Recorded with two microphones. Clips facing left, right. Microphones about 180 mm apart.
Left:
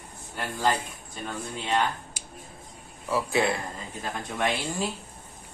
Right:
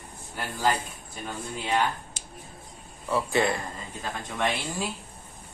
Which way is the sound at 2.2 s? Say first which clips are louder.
Left 1 dB; 10° left (ahead or behind).